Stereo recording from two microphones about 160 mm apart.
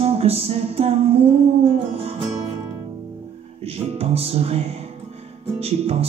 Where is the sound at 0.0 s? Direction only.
40° right (ahead or behind).